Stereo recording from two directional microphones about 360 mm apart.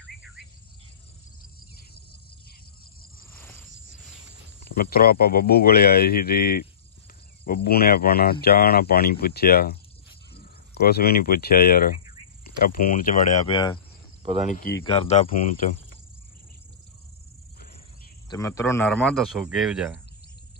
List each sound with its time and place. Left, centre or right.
4.7 s speech: left
18.3 s speech: centre